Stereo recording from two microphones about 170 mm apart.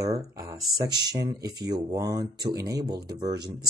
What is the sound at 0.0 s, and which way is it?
Speech, 20° right (ahead or behind).